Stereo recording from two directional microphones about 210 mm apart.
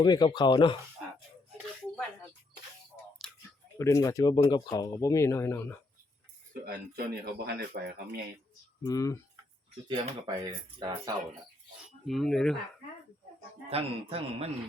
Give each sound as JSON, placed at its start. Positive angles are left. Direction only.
{"t": 0.0, "sound": "speech", "side_deg": 20}
{"t": 3.8, "sound": "speech", "side_deg": 15}
{"t": 6.5, "sound": "speech", "side_deg": -45}
{"t": 8.8, "sound": "speech", "side_deg": 15}
{"t": 9.9, "sound": "speech", "side_deg": -20}
{"t": 11.9, "sound": "speech", "side_deg": 0}
{"t": 13.7, "sound": "a man's voice", "side_deg": -30}